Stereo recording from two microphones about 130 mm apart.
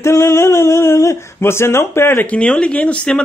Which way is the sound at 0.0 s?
20° left (ahead or behind).